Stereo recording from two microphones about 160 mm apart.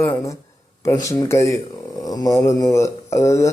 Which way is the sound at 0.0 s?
20° left (ahead or behind).